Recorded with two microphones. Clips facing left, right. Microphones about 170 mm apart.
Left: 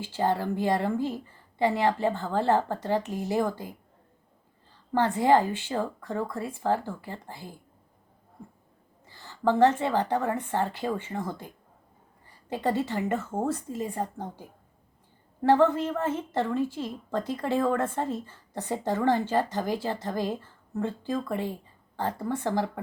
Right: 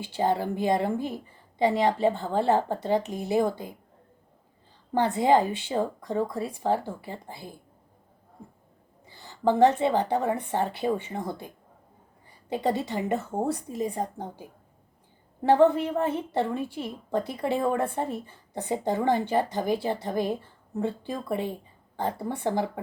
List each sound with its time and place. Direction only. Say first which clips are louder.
0.0 s a woman's voice: right 1 dB; 15° right (ahead or behind)
4.9 s a woman's voice: even; 15° right (ahead or behind)
9.0 s a woman's voice: right 1 dB; 15° right (ahead or behind)